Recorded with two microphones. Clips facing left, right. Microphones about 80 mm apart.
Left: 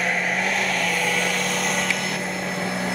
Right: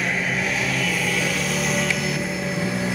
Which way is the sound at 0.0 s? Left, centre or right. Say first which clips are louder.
Left 1 dB; centre.